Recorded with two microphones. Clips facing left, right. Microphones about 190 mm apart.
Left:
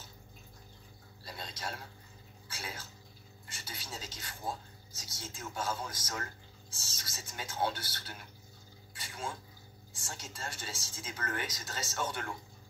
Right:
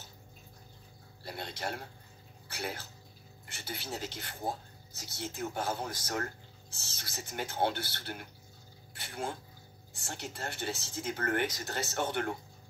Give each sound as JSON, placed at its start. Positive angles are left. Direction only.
{"t": 1.2, "sound": "speech", "side_deg": -60}